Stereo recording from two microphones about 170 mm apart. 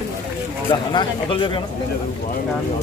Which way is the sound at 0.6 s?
30° left (ahead or behind).